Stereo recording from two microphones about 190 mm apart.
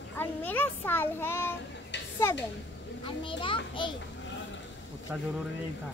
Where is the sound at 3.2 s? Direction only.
25° left (ahead or behind).